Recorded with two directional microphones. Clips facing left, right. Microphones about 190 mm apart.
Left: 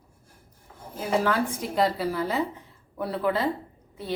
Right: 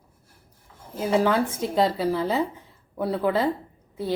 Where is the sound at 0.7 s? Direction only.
45° left (ahead or behind).